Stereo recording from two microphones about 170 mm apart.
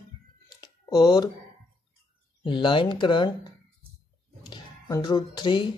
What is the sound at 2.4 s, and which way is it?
Speech, 30° left (ahead or behind).